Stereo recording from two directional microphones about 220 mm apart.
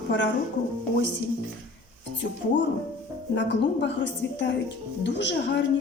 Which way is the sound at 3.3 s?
50° left (ahead or behind).